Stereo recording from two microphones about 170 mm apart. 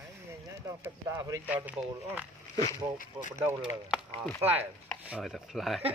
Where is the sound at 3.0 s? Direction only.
50° left (ahead or behind).